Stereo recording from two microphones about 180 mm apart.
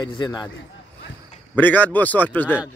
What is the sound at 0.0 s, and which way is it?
Speech, 25° left (ahead or behind).